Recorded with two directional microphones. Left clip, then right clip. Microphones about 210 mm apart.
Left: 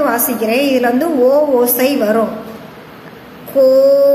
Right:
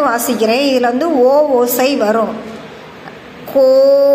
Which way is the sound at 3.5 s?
10° right (ahead or behind).